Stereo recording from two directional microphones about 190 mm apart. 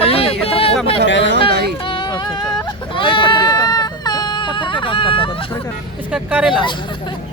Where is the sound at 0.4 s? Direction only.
30° left (ahead or behind).